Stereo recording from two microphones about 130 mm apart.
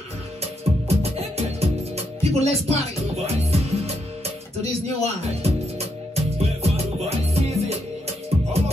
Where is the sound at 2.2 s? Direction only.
55° right (ahead or behind).